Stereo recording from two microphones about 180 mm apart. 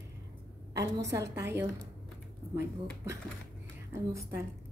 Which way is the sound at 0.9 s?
15° right (ahead or behind).